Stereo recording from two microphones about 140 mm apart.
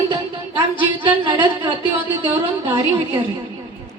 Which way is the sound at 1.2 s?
35° right (ahead or behind).